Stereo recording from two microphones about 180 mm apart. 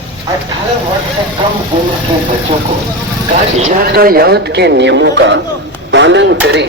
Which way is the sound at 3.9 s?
55° right (ahead or behind).